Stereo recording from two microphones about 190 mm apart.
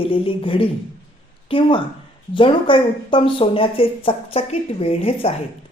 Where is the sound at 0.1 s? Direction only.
30° left (ahead or behind).